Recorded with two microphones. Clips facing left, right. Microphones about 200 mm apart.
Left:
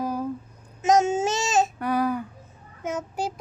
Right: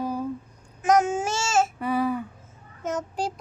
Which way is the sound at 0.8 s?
25° left (ahead or behind).